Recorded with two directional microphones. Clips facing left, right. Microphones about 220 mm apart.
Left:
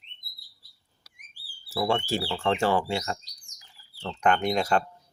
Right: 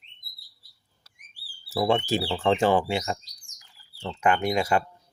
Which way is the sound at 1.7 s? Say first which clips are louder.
Right 3 dB; 20° right (ahead or behind).